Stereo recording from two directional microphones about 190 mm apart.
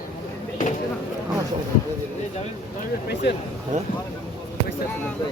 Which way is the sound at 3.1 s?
60° left (ahead or behind).